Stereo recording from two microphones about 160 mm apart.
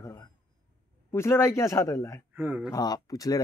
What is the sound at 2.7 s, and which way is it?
Speech, 25° left (ahead or behind).